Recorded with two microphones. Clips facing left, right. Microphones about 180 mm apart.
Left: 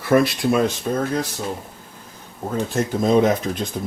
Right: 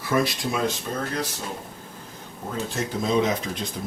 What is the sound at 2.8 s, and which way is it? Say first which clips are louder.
Speech: left 6 dB; 50° left (ahead or behind).